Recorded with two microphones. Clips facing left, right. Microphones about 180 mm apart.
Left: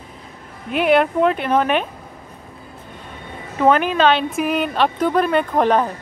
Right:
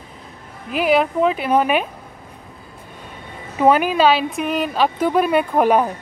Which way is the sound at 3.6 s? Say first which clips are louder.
Right 1 dB; 10° right (ahead or behind).